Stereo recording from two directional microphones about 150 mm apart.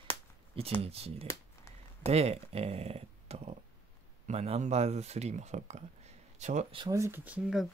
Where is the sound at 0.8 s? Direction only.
40° right (ahead or behind).